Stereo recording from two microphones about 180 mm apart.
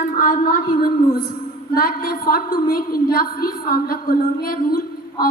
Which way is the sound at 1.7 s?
55° left (ahead or behind).